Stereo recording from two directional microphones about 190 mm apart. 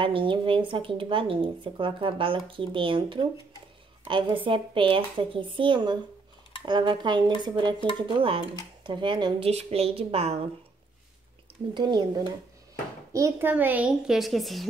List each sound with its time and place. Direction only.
0.0 s speech: 25° right (ahead or behind)
8.8 s a woman's voice: 25° right (ahead or behind)
11.7 s speech: 25° right (ahead or behind)
13.1 s a child's voice: 15° right (ahead or behind)